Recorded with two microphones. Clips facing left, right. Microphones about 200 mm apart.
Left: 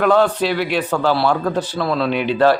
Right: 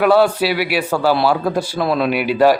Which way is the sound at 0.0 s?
10° right (ahead or behind).